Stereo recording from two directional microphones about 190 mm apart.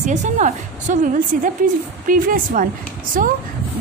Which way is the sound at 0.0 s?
40° right (ahead or behind).